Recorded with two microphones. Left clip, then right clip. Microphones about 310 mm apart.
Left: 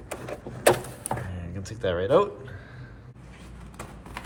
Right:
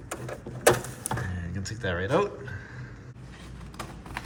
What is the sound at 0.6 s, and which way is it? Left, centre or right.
Door, centre.